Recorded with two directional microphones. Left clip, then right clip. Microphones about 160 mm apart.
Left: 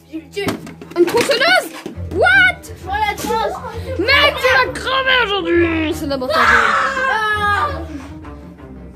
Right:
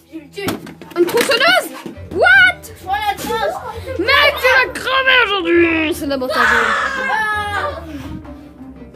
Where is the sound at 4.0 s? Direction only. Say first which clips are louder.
Right 1 dB; 5° right (ahead or behind).